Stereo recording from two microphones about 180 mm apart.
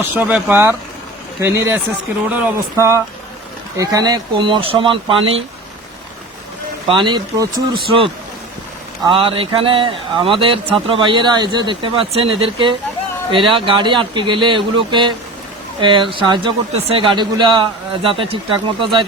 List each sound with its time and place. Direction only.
0.1 s speech: 10° right (ahead or behind); by 5.4 s 30° right (ahead or behind)
6.8 s speech: 25° right (ahead or behind)